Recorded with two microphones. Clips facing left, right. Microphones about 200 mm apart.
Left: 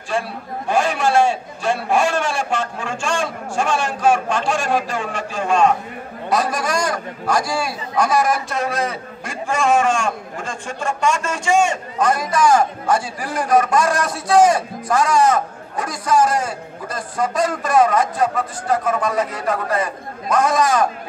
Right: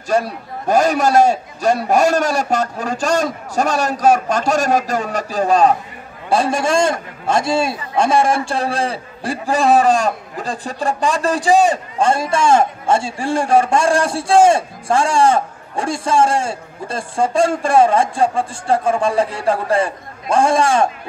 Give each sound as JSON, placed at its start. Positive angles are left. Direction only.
{"t": 0.1, "sound": "a man's voice", "side_deg": -40}